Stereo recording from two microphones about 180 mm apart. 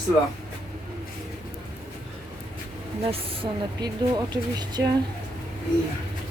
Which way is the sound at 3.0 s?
25° right (ahead or behind).